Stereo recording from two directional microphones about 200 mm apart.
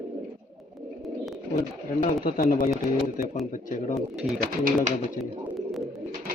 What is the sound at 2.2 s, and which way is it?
Speech, 40° left (ahead or behind).